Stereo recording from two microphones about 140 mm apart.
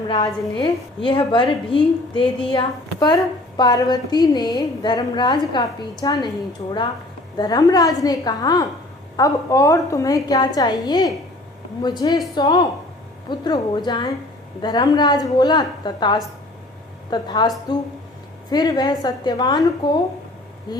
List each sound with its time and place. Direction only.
0.1 s a woman's voice: 35° left (ahead or behind)
7.3 s a woman's voice: 30° left (ahead or behind)
18.5 s a woman's voice: 30° left (ahead or behind)